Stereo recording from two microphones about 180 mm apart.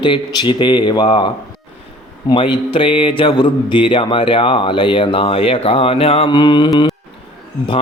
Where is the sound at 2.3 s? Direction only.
30° left (ahead or behind).